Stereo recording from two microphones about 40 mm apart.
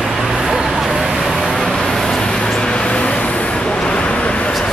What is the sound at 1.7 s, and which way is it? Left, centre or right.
Vehicle, centre.